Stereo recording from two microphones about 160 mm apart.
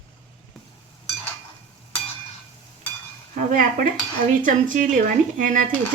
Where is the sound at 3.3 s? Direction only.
55° right (ahead or behind).